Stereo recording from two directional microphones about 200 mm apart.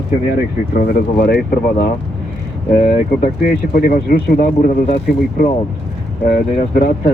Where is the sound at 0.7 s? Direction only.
50° left (ahead or behind).